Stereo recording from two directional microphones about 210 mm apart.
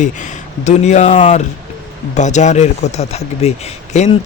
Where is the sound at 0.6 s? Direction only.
35° left (ahead or behind).